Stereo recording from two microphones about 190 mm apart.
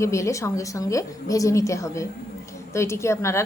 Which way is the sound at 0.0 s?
15° left (ahead or behind).